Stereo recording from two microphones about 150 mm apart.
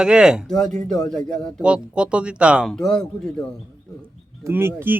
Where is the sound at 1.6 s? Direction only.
5° right (ahead or behind).